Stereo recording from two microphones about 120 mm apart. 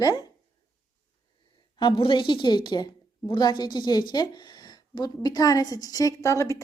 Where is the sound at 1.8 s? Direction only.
45° left (ahead or behind).